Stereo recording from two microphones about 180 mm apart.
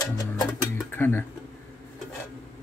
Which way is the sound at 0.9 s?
10° left (ahead or behind).